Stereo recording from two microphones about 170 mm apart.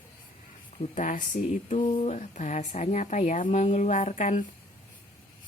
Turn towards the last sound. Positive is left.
turn(degrees=45)  # may be behind; listen again after turning